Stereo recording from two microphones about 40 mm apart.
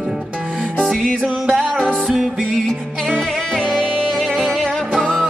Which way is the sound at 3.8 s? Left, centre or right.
Centre.